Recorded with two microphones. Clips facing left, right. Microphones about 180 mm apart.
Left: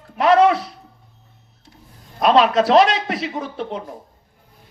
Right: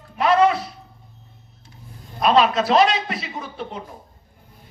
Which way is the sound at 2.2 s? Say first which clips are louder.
Left 3 dB; 75° left (ahead or behind).